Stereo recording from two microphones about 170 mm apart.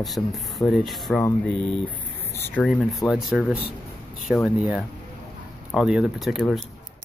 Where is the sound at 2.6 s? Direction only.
Centre (ahead or behind).